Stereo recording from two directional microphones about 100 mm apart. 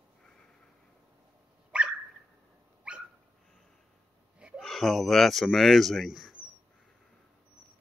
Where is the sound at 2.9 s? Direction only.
10° right (ahead or behind).